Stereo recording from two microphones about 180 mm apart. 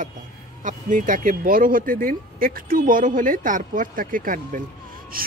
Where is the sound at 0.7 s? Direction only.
45° right (ahead or behind).